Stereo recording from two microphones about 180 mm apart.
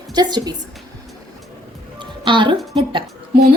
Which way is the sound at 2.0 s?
25° right (ahead or behind).